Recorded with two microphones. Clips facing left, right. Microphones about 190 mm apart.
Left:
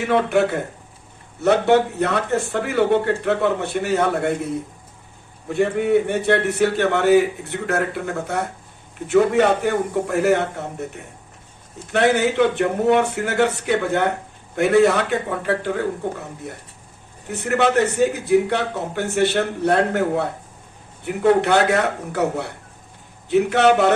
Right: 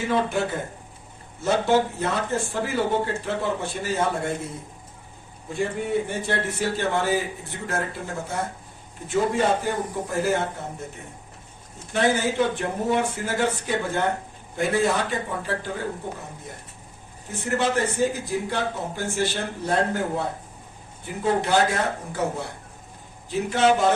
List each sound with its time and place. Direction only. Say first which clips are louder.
0.1 s a man's voice: left 7 dB; 65° left (ahead or behind)
5.5 s a man's voice: left 8 dB; 65° left (ahead or behind)